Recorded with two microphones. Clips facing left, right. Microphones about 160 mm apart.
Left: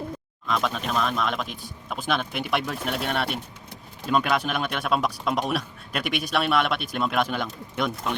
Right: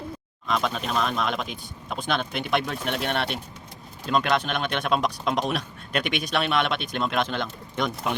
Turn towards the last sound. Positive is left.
turn(degrees=5)  # may be behind; listen again after turning